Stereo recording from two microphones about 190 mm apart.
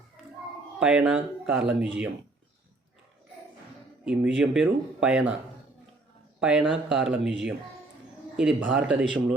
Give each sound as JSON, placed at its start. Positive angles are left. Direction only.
{"t": 0.8, "sound": "speech", "side_deg": -5}
{"t": 4.0, "sound": "speech", "side_deg": -5}
{"t": 6.4, "sound": "speech", "side_deg": -5}
{"t": 8.4, "sound": "speech", "side_deg": -5}